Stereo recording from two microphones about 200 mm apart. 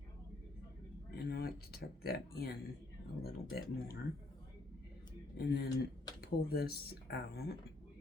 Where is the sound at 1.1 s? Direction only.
50° left (ahead or behind).